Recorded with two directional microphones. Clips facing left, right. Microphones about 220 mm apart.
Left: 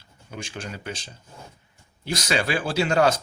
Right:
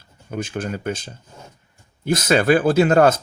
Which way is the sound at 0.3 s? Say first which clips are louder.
Right 9 dB; 50° right (ahead or behind).